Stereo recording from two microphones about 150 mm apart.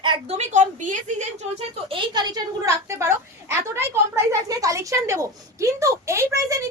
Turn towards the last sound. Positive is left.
turn(degrees=-20)  # may be behind; listen again after turning